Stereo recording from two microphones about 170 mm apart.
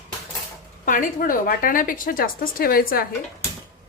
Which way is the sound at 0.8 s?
50° left (ahead or behind).